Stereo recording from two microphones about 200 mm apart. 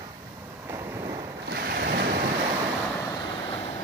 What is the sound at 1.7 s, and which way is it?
Waves, 55° right (ahead or behind).